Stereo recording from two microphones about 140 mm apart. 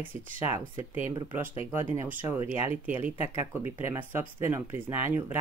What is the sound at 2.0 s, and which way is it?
Speech, 20° right (ahead or behind).